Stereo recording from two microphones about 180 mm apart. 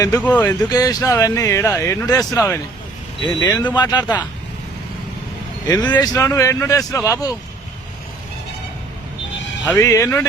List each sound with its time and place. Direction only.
0.2 s speech: 10° left (ahead or behind)
0.7 s speech: 20° left (ahead or behind)
5.6 s speech: 20° left (ahead or behind)
9.7 s speech: 15° left (ahead or behind)